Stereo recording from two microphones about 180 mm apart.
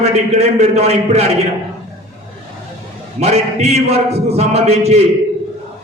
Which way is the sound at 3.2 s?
35° right (ahead or behind).